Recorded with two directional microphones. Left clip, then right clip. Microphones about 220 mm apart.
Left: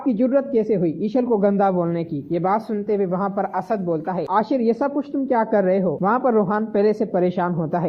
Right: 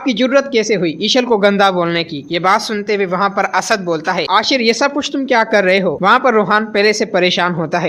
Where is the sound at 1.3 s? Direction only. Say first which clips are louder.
Right 6 dB; 25° right (ahead or behind).